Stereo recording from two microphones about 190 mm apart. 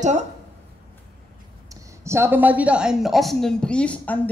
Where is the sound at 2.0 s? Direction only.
10° right (ahead or behind).